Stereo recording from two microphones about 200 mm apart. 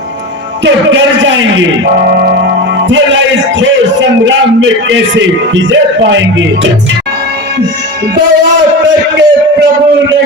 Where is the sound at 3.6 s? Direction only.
65° right (ahead or behind).